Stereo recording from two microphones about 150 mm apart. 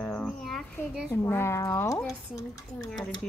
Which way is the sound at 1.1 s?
20° left (ahead or behind).